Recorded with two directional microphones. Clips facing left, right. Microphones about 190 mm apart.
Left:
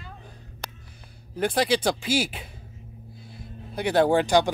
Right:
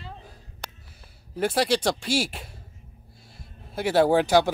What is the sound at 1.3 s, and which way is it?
Speech, centre (ahead or behind).